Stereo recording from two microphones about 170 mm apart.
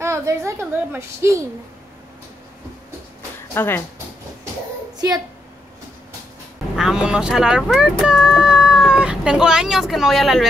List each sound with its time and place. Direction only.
0.0 s a woman's voice: 15° right (ahead or behind)
3.5 s speech: 15° left (ahead or behind)
4.9 s a sound: 25° right (ahead or behind)
6.7 s speech: 5° right (ahead or behind)